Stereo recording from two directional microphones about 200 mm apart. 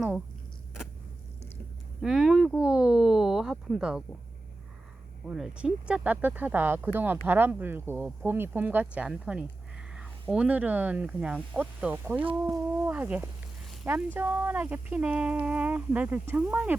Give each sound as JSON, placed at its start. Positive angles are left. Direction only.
{"t": 2.0, "sound": "speech", "side_deg": 0}
{"t": 5.3, "sound": "speech", "side_deg": -5}
{"t": 12.2, "sound": "speech", "side_deg": -25}
{"t": 12.7, "sound": "speech", "side_deg": -10}